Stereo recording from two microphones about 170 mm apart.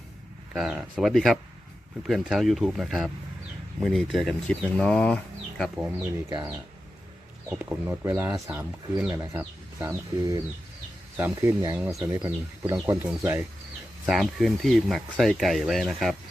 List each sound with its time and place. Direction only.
0.5 s speech: 5° right (ahead or behind)
6.2 s speech: 20° right (ahead or behind)
7.5 s speech: 10° right (ahead or behind)
14.1 s speech: centre (ahead or behind)